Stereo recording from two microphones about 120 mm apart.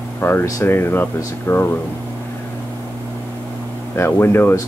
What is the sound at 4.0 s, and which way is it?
Speech, 20° left (ahead or behind).